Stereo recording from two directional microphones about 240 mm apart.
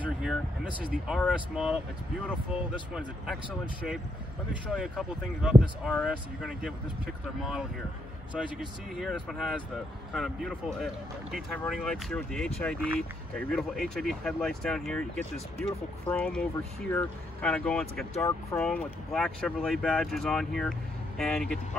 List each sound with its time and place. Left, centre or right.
0.0 s speech: centre
4.6 s speech: centre
8.4 s speech: centre